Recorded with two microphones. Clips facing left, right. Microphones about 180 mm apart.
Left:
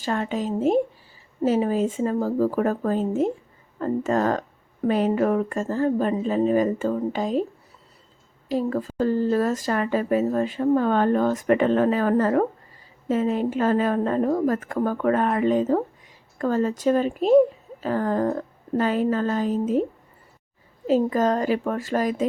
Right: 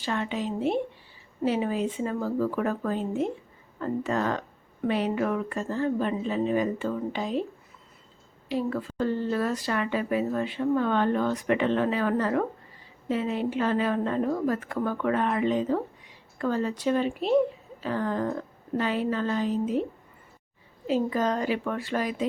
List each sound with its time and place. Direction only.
0.0 s a woman's voice: 45° left (ahead or behind)
8.4 s a woman's voice: 40° left (ahead or behind)